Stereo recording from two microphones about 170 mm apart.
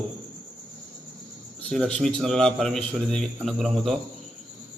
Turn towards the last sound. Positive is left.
turn(degrees=0)  # may be behind; listen again after turning